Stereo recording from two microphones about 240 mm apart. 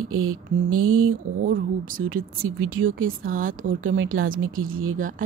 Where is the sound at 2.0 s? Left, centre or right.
Right.